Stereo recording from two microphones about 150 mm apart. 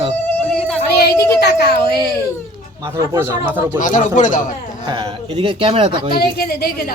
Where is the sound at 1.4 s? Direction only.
90° left.